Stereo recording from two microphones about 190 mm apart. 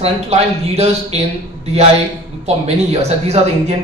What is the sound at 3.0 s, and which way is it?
Speech, 35° right (ahead or behind).